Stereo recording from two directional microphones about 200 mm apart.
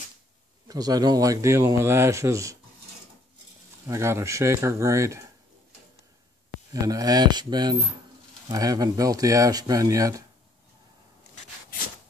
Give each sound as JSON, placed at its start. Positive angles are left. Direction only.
{"t": 0.7, "sound": "speech", "side_deg": -20}
{"t": 3.8, "sound": "speech", "side_deg": -15}
{"t": 6.7, "sound": "speech", "side_deg": -20}